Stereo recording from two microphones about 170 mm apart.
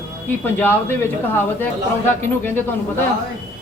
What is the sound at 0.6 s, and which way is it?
Speech, 10° left (ahead or behind).